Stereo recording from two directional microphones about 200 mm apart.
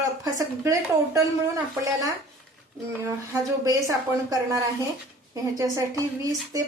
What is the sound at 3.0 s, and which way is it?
A woman's voice, 15° right (ahead or behind).